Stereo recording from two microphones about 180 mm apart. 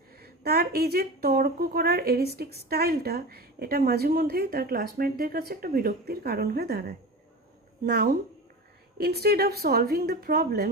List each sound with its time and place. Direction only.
0.2 s speech: 60° right (ahead or behind)